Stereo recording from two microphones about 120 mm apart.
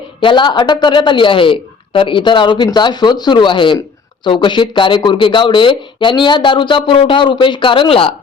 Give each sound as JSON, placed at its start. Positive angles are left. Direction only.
{"t": 0.2, "sound": "speech", "side_deg": 40}